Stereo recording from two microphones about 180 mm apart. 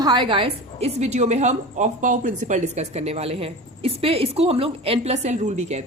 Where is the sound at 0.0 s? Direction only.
25° right (ahead or behind).